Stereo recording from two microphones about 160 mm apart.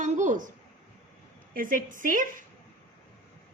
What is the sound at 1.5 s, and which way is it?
Speech, 55° right (ahead or behind).